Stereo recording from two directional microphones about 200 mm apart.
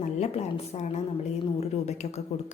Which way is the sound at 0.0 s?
35° left (ahead or behind).